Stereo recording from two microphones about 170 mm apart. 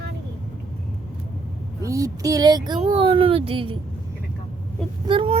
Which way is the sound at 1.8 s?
20° right (ahead or behind).